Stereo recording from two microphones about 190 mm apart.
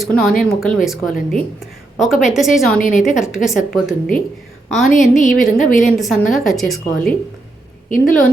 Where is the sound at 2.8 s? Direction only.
45° left (ahead or behind).